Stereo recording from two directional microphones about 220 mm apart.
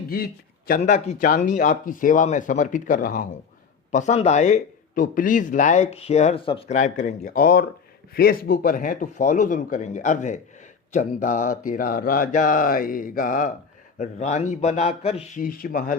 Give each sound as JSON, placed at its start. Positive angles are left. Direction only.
{"t": 0.8, "sound": "speech", "side_deg": 30}
{"t": 15.4, "sound": "speech", "side_deg": 40}